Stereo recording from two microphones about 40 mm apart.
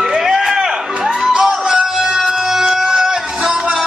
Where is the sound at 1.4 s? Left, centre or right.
Centre.